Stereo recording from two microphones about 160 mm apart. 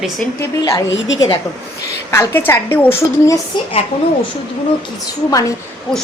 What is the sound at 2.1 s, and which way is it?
Speech, 15° left (ahead or behind).